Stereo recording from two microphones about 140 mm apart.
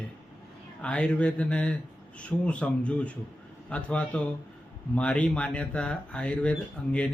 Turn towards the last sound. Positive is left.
turn(degrees=10)  # may be behind; listen again after turning